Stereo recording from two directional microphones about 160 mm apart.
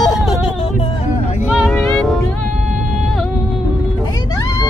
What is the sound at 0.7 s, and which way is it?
Music, 35° left (ahead or behind).